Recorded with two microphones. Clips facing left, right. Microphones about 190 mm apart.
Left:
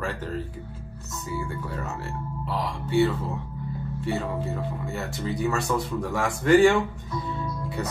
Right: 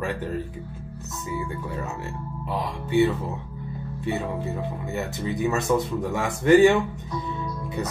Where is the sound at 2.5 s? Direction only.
20° right (ahead or behind).